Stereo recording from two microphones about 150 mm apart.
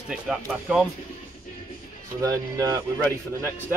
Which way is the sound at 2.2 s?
25° right (ahead or behind).